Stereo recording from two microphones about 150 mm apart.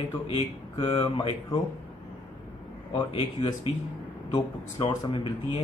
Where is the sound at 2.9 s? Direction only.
35° left (ahead or behind).